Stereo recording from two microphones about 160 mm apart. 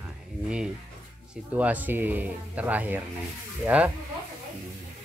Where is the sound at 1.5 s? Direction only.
10° right (ahead or behind).